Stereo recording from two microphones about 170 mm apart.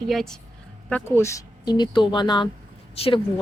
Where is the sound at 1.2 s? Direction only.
20° left (ahead or behind).